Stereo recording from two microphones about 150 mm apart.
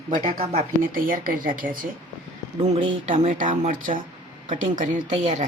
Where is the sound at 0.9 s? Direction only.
70° right (ahead or behind).